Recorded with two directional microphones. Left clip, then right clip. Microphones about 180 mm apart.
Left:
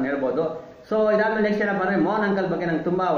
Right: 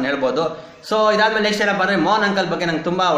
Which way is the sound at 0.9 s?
15° right (ahead or behind).